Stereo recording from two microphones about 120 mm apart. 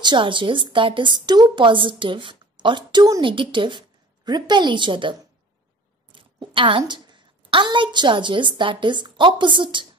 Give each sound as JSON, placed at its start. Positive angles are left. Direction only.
{"t": 0.0, "sound": "a woman's voice", "side_deg": -40}
{"t": 6.1, "sound": "a woman's voice", "side_deg": -45}